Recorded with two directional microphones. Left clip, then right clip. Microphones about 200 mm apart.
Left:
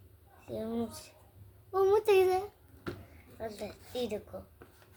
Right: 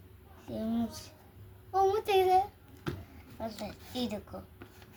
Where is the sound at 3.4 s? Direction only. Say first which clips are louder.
Even; 10° left (ahead or behind).